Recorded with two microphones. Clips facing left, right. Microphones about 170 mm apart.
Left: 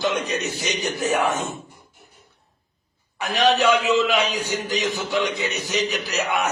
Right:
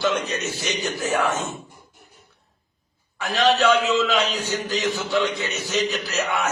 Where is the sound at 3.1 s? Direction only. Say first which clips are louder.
Even; 15° left (ahead or behind).